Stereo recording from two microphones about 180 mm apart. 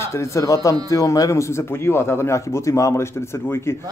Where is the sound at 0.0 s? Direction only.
15° left (ahead or behind).